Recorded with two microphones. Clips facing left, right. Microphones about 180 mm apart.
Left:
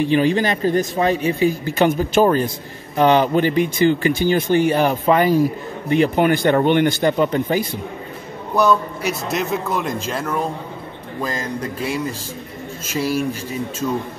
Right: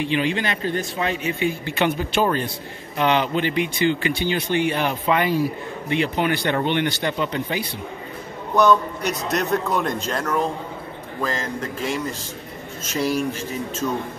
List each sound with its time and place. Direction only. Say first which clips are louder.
0.0 s a man's voice: left 6 dB; 40° left (ahead or behind)
8.5 s a man's voice: even; 5° left (ahead or behind)